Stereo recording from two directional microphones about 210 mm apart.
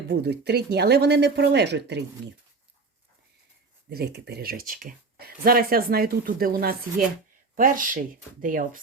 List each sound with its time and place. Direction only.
0.1 s speech: 50° right (ahead or behind)
3.8 s speech: 50° right (ahead or behind)